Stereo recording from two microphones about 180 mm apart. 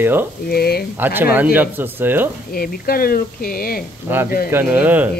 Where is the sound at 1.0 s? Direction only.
10° right (ahead or behind).